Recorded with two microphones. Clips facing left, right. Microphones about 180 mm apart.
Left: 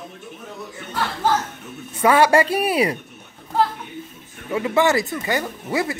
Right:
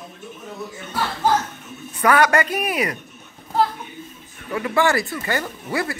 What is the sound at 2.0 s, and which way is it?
Speech, 25° left (ahead or behind).